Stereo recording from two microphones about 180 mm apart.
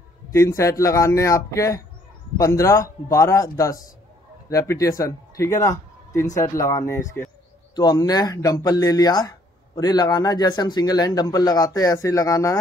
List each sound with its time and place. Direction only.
0.3 s a man's voice: 15° left (ahead or behind)